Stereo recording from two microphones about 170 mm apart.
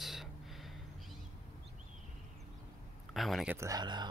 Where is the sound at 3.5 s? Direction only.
20° right (ahead or behind).